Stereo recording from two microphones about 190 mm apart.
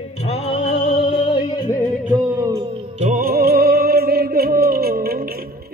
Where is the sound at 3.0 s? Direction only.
45° right (ahead or behind).